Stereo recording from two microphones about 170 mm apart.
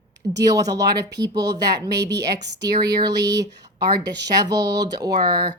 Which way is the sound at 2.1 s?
90° right.